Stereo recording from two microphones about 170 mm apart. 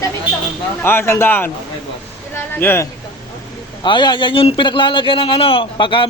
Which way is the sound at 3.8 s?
25° left (ahead or behind).